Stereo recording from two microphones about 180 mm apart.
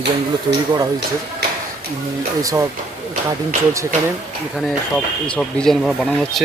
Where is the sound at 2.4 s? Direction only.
20° right (ahead or behind).